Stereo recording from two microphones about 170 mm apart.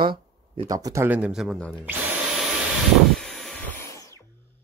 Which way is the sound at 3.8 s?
15° left (ahead or behind).